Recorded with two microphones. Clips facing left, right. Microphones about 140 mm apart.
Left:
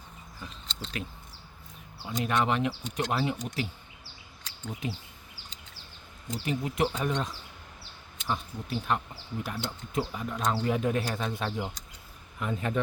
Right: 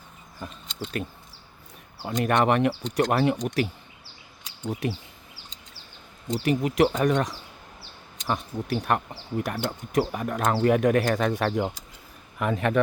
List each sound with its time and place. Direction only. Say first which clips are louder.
0.4 s speech: right 7 dB; 50° right (ahead or behind); by 3.7 s 70° right (ahead or behind)
4.7 s speech: right 7 dB; 75° right (ahead or behind)
6.3 s speech: right 8 dB; 75° right (ahead or behind)
8.3 s speech: right 5 dB; 70° right (ahead or behind)